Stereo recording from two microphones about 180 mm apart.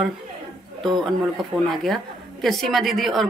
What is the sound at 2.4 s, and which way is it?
Speech, centre (ahead or behind).